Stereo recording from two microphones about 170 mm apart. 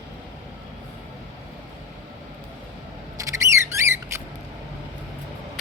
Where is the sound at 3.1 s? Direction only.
20° right (ahead or behind).